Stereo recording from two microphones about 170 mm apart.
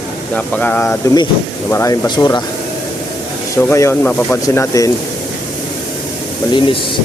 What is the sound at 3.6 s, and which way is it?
Speech, 15° left (ahead or behind).